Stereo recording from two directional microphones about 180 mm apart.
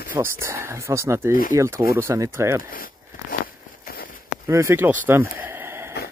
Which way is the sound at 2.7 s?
50° left (ahead or behind).